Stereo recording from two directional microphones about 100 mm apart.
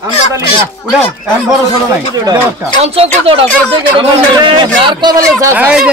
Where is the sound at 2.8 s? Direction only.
75° right (ahead or behind).